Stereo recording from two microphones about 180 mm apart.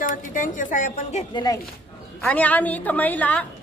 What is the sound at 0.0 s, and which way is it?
A woman's voice, 45° left (ahead or behind).